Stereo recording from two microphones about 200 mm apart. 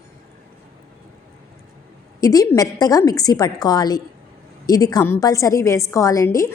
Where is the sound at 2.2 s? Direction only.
15° left (ahead or behind).